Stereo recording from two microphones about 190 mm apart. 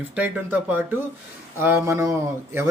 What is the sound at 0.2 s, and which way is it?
Speech, 10° right (ahead or behind).